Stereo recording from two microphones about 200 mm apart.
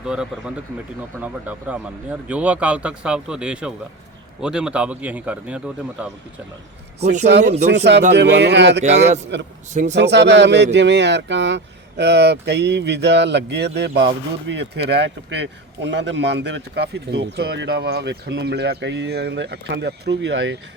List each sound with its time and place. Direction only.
0.0 s speech: 5° right (ahead or behind)
7.4 s speech: 35° right (ahead or behind)
8.1 s speech: 60° right (ahead or behind)
9.0 s speech: 35° right (ahead or behind)
9.9 s speech: 60° right (ahead or behind)